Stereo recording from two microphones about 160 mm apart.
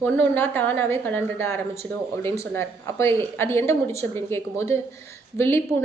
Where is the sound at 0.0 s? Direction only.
15° left (ahead or behind).